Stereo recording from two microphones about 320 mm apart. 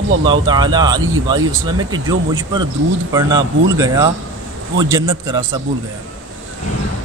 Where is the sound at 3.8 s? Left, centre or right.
Centre.